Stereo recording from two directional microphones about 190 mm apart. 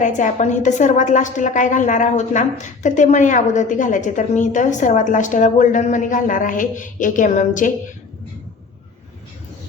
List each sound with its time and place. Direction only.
0.0 s a woman's voice: 40° left (ahead or behind)